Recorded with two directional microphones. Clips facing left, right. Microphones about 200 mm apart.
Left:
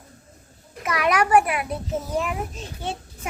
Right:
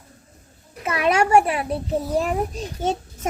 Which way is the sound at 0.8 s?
25° right (ahead or behind).